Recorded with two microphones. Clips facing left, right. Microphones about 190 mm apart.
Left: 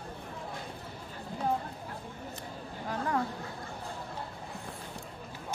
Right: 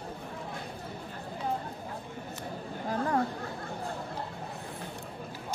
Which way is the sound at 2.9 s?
35° right (ahead or behind).